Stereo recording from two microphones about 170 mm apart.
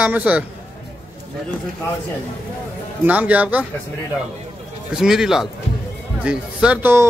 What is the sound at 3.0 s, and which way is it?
Speech, 10° right (ahead or behind).